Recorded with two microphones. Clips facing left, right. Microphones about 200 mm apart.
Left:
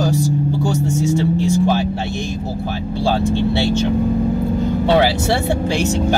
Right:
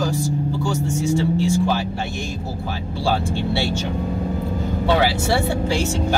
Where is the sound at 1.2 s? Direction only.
20° left (ahead or behind).